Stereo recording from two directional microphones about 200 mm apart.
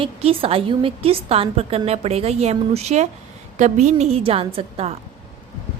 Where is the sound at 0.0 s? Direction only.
30° right (ahead or behind).